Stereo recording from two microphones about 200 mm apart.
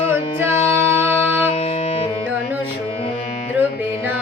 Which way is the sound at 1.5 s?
30° left (ahead or behind).